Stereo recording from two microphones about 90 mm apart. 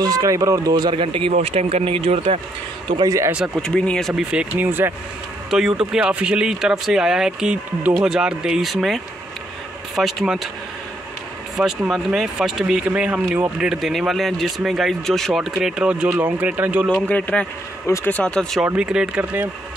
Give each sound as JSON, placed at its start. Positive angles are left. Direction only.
{"t": 0.0, "sound": "speech", "side_deg": -45}
{"t": 0.7, "sound": "speech", "side_deg": -75}
{"t": 3.6, "sound": "speech", "side_deg": 10}
{"t": 4.2, "sound": "speech", "side_deg": -10}
{"t": 4.6, "sound": "speech", "side_deg": -25}
{"t": 5.5, "sound": "a man's voice", "side_deg": -5}
{"t": 11.5, "sound": "a man's voice", "side_deg": -5}
{"t": 17.0, "sound": "speech", "side_deg": 15}
{"t": 17.8, "sound": "speech", "side_deg": 30}
{"t": 18.1, "sound": "speech", "side_deg": 10}
{"t": 18.8, "sound": "speech", "side_deg": -10}